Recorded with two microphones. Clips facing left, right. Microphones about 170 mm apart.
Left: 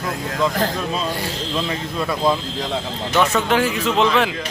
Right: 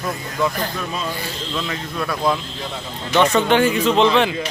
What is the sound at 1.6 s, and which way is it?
Speech, 25° left (ahead or behind).